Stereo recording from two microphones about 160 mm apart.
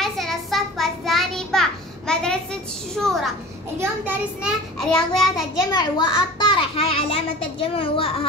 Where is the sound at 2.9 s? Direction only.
Centre (ahead or behind).